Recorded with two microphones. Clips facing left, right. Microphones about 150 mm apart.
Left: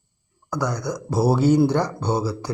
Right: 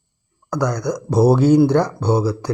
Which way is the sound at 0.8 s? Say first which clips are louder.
Right 7 dB; 15° right (ahead or behind).